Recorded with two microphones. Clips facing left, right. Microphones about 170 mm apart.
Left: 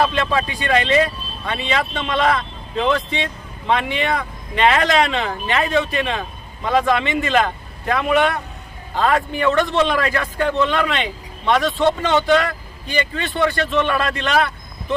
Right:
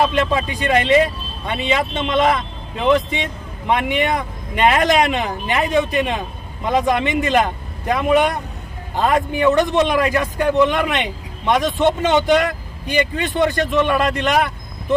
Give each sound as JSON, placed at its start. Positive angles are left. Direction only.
{"t": 0.0, "sound": "a man's voice", "side_deg": -15}